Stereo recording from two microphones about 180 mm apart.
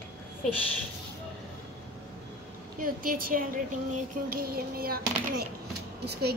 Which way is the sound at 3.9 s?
55° right (ahead or behind).